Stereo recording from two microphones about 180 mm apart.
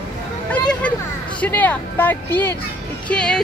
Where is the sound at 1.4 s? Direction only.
10° left (ahead or behind).